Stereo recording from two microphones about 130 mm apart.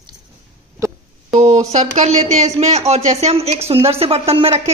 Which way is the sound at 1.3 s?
60° right (ahead or behind).